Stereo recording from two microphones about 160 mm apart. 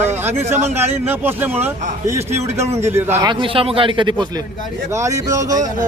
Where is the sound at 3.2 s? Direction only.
30° right (ahead or behind).